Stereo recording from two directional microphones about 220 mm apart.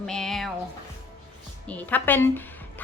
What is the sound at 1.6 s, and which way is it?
A woman's voice, 5° left (ahead or behind).